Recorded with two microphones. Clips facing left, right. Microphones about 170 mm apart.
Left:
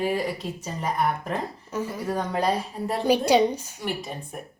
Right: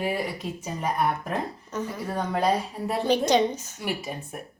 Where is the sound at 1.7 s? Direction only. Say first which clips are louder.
Left 5 dB; 10° left (ahead or behind).